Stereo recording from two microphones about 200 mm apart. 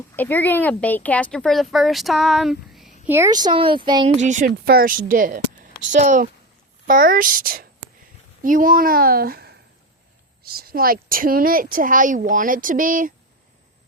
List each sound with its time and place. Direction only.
0.2 s speech: 10° left (ahead or behind)
3.1 s speech: 15° right (ahead or behind)
4.2 s a woman's voice: 40° right (ahead or behind)